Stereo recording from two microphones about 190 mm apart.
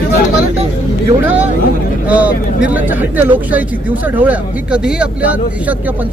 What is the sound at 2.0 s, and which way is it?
Speech, 10° right (ahead or behind).